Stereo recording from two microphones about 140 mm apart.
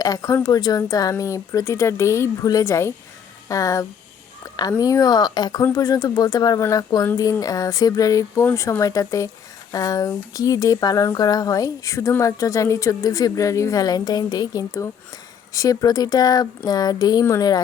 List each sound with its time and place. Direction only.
0.0 s speech: 25° left (ahead or behind)
4.4 s fowl: 30° left (ahead or behind)
4.8 s speech: 25° left (ahead or behind)